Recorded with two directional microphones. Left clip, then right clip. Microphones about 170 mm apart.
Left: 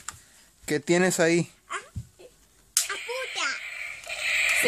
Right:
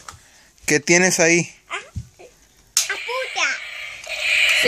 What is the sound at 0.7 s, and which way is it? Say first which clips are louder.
Speech: right 8 dB; centre (ahead or behind).